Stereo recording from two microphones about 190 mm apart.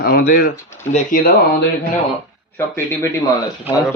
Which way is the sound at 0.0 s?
50° left (ahead or behind).